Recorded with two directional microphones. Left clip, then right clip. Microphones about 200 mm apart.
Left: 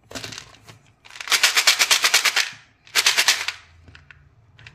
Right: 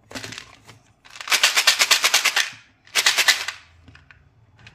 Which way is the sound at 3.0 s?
15° left (ahead or behind).